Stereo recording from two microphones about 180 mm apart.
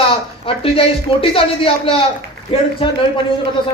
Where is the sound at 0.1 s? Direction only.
30° left (ahead or behind).